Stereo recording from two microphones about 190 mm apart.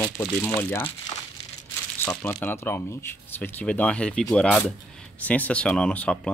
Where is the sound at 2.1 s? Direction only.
10° left (ahead or behind).